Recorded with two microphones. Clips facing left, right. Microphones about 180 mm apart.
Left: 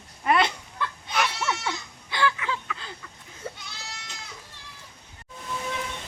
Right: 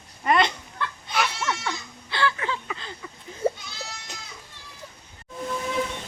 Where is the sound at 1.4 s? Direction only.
10° left (ahead or behind).